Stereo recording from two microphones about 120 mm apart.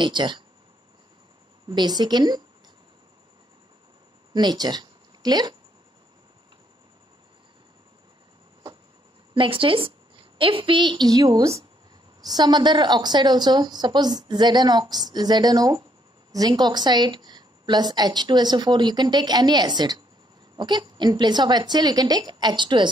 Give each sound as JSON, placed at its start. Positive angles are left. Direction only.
{"t": 0.0, "sound": "a woman's voice", "side_deg": -40}
{"t": 1.7, "sound": "a woman's voice", "side_deg": -35}
{"t": 4.3, "sound": "speech", "side_deg": -35}
{"t": 9.3, "sound": "a woman's voice", "side_deg": -45}